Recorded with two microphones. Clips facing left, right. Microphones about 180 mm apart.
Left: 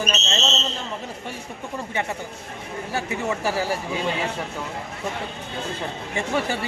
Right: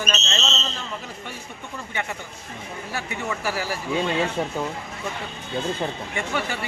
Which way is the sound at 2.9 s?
25° left (ahead or behind).